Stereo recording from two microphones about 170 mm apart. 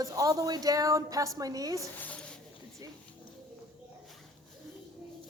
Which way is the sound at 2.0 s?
10° left (ahead or behind).